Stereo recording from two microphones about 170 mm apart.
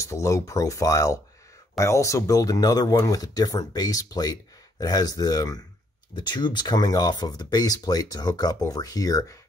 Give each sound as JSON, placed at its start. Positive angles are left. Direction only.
{"t": 0.0, "sound": "speech", "side_deg": 15}